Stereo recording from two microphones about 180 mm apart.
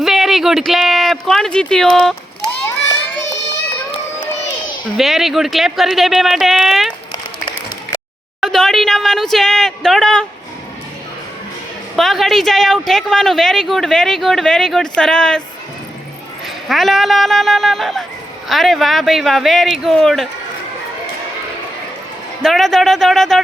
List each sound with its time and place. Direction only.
0.0 s speech: centre (ahead or behind)
4.2 s a sound: 45° left (ahead or behind)
4.9 s speech: centre (ahead or behind)
8.4 s speech: 5° left (ahead or behind)
11.9 s speech: centre (ahead or behind)
16.6 s speech: centre (ahead or behind)
22.4 s speech: centre (ahead or behind)